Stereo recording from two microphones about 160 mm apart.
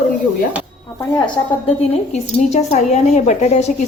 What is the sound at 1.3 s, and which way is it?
A woman's voice, 40° left (ahead or behind).